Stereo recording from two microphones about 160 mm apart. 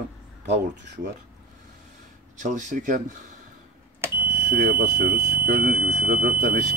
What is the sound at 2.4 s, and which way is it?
Speech, 50° right (ahead or behind).